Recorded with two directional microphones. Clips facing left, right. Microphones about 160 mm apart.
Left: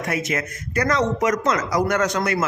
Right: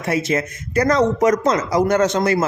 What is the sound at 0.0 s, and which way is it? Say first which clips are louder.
Speech: right 5 dB; 30° right (ahead or behind).